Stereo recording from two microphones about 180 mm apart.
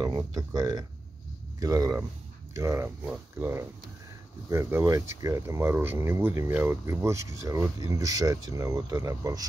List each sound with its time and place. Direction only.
0.0 s speech: 20° right (ahead or behind)